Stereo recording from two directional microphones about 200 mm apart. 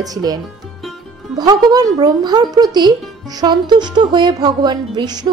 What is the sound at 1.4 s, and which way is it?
Speech, 20° right (ahead or behind).